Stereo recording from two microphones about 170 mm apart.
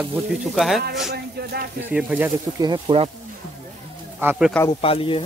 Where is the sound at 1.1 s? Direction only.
70° right (ahead or behind).